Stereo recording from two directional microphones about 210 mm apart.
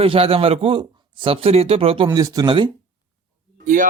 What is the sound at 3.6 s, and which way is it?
Speech, 40° right (ahead or behind).